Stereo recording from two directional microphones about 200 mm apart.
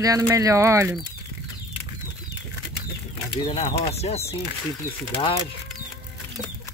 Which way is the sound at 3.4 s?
30° left (ahead or behind).